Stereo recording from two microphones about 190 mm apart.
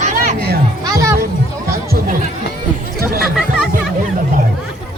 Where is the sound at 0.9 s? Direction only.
15° right (ahead or behind).